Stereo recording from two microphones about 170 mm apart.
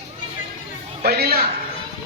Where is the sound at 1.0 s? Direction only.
65° right (ahead or behind).